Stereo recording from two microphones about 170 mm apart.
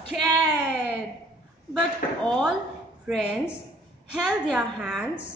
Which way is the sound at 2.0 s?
55° left (ahead or behind).